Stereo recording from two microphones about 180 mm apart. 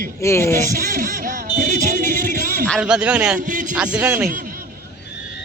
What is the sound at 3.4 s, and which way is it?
Speech, 45° right (ahead or behind).